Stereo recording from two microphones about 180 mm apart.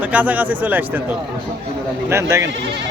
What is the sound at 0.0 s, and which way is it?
Speech, 10° right (ahead or behind).